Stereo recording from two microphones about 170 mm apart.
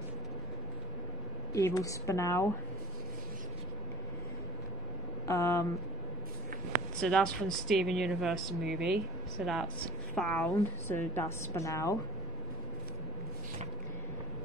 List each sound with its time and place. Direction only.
1.5 s a woman's voice: 20° left (ahead or behind)
5.2 s a woman's voice: 15° left (ahead or behind)
7.0 s a woman's voice: 5° left (ahead or behind)